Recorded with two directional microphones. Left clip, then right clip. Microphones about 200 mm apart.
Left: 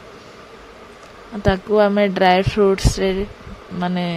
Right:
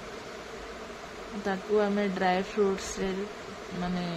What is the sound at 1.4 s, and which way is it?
A woman's voice, 45° left (ahead or behind).